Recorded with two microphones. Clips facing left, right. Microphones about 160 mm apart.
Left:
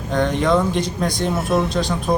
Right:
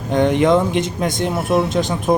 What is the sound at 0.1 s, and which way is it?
Speech, 20° right (ahead or behind).